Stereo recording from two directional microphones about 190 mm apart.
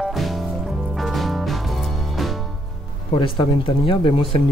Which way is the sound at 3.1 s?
30° left (ahead or behind).